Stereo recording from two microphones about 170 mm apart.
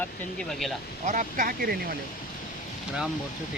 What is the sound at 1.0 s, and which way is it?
Speech, 50° right (ahead or behind).